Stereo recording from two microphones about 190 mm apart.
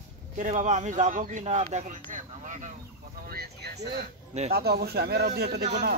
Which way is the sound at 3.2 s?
55° right (ahead or behind).